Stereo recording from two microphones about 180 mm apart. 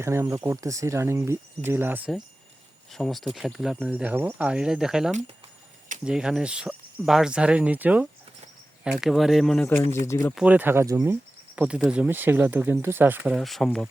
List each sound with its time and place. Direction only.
0.0 s speech: 15° right (ahead or behind); by 9.6 s centre (ahead or behind)
10.1 s speech: 15° left (ahead or behind)
10.3 s speech: 5° right (ahead or behind)